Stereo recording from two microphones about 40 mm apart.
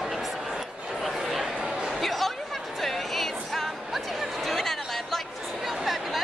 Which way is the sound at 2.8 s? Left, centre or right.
Centre.